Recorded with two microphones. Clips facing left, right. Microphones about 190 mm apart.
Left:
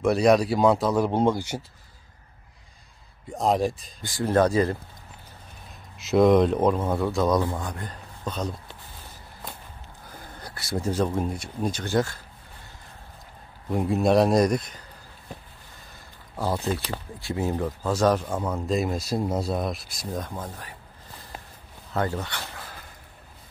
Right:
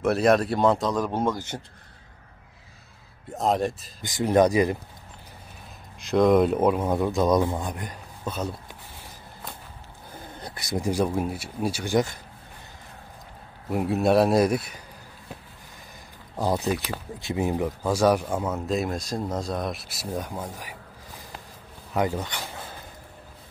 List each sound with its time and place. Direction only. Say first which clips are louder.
0.0 s speech: left 1 dB; centre (ahead or behind)
3.3 s speech: left 1 dB; centre (ahead or behind)
4.0 s speech: right 2 dB; 20° right (ahead or behind)
5.9 s speech: left 1 dB; 5° left (ahead or behind)
10.4 s speech: right 1 dB; 20° right (ahead or behind)
13.7 s speech: even; 5° right (ahead or behind)
16.3 s speech: right 2 dB; 15° right (ahead or behind)
21.9 s speech: right 2 dB; 15° right (ahead or behind)